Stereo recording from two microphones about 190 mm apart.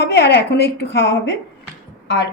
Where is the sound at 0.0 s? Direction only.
65° left (ahead or behind).